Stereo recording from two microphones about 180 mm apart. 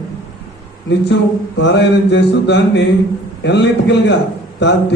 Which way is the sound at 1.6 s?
75° left (ahead or behind).